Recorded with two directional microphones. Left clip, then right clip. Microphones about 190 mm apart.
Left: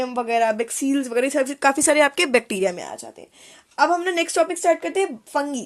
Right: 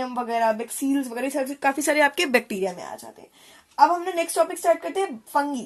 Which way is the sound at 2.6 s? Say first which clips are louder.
Left 5 dB; 35° left (ahead or behind).